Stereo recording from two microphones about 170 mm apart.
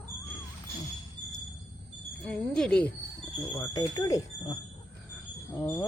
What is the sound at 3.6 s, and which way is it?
Speech, 20° left (ahead or behind).